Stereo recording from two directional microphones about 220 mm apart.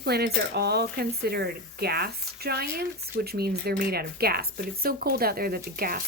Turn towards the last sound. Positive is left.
turn(degrees=-40)  # may be behind; listen again after turning